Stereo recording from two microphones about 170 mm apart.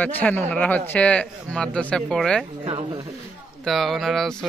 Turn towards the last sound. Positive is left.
turn(degrees=0)  # may be behind; listen again after turning